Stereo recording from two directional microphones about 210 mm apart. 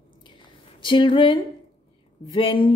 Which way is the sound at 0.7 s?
25° left (ahead or behind).